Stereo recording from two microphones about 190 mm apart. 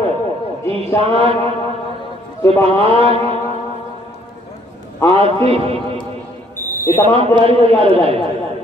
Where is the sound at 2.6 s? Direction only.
30° right (ahead or behind).